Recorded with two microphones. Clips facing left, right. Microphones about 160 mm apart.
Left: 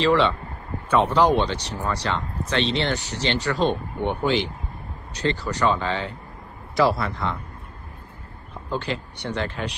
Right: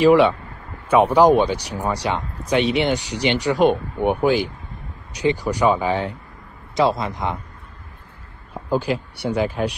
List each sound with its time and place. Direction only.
0.0 s speech: 10° right (ahead or behind)
8.7 s speech: 10° right (ahead or behind)